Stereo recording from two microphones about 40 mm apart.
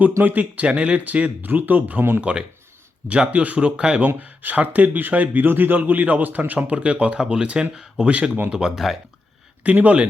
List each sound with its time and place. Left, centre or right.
0.0 s a man's voice: right
0.7 s speech: right
1.0 s a man's voice: right
2.3 s speech: right
4.2 s a man's voice: right
7.7 s speech: centre
8.0 s speech: right
8.5 s speech: centre
9.6 s speech: right